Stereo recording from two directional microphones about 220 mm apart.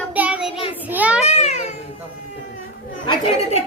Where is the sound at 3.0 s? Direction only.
25° left (ahead or behind).